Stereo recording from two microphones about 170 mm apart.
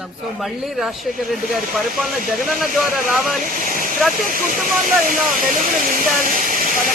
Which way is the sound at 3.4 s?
50° right (ahead or behind).